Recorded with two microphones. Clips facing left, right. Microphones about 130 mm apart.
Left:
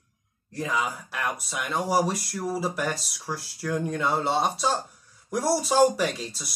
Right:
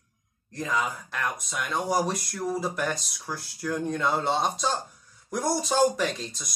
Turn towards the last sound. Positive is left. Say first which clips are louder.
# left 1 dB
turn(degrees=5)  # may be behind; listen again after turning